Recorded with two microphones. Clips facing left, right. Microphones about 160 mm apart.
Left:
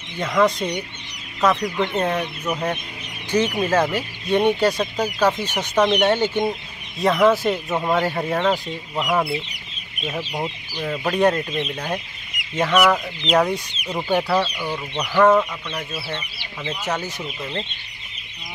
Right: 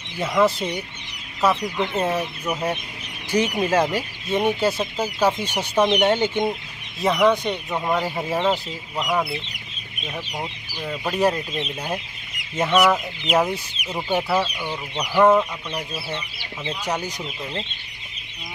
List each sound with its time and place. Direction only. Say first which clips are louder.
0.2 s speech: left 1 dB; 5° right (ahead or behind)
4.3 s speech: left 3 dB; centre (ahead or behind)
7.0 s speech: left 2 dB; centre (ahead or behind)
12.6 s speech: even; 25° right (ahead or behind)
12.9 s speech: left 2 dB; 10° right (ahead or behind)